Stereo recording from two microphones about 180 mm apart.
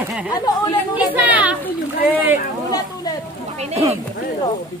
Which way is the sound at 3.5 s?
35° right (ahead or behind).